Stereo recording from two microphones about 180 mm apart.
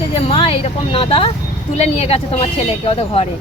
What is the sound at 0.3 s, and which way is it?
Vehicle, 30° left (ahead or behind).